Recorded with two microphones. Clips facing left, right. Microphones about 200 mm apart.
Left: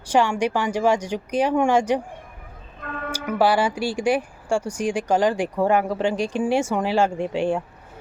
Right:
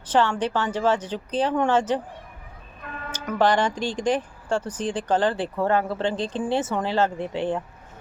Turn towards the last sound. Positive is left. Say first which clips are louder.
# left 3 dB
turn(degrees=10)  # may be behind; listen again after turning